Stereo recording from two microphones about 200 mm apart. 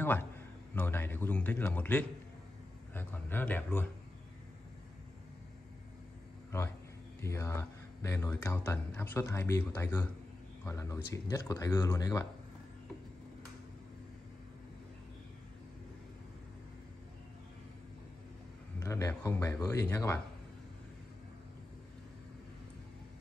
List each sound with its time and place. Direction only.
0.0 s a man's voice: 10° left (ahead or behind)
7.2 s speech: 15° left (ahead or behind)
18.8 s speech: 15° left (ahead or behind)